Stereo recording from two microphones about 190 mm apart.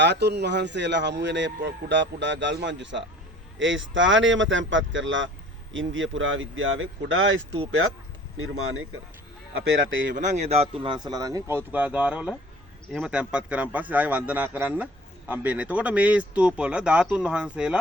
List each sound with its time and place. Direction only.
0.0 s speech: 65° right (ahead or behind)
5.7 s speech: 90° right
10.2 s speech: 40° right (ahead or behind); by 17.7 s 5° right (ahead or behind)